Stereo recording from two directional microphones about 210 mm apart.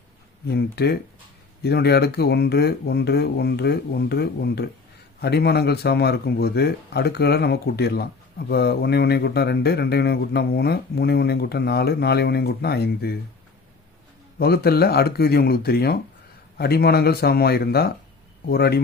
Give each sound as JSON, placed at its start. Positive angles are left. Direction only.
{"t": 0.4, "sound": "speech", "side_deg": 50}
{"t": 14.3, "sound": "speech", "side_deg": 45}